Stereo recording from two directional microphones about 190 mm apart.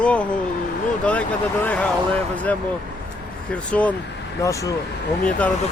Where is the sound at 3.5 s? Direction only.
5° left (ahead or behind).